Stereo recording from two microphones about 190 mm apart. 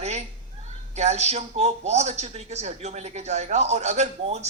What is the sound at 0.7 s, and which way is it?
Speech, 35° right (ahead or behind).